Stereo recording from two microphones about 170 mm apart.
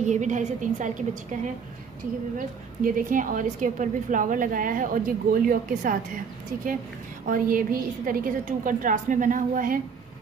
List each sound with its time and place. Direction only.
0.0 s a woman's voice: 45° right (ahead or behind)
7.2 s a woman's voice: 55° right (ahead or behind)